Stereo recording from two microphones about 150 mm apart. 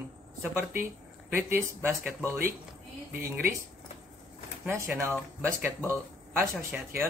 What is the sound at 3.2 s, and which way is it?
Speech, 15° right (ahead or behind).